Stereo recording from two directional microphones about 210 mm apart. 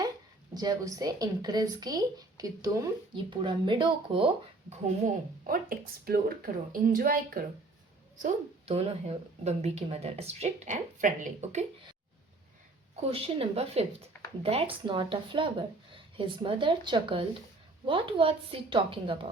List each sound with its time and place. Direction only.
0.5 s a woman's voice: 20° right (ahead or behind)
4.7 s speech: 35° right (ahead or behind)
8.2 s a woman's voice: 30° right (ahead or behind)
13.0 s a woman's voice: 25° right (ahead or behind)